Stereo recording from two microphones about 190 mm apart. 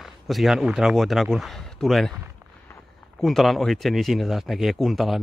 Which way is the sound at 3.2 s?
Centre (ahead or behind).